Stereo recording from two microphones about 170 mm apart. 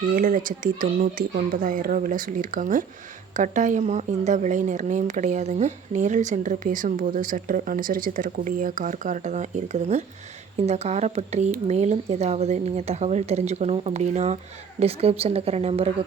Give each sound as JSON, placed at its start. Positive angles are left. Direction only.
{"t": 0.1, "sound": "speech", "side_deg": -50}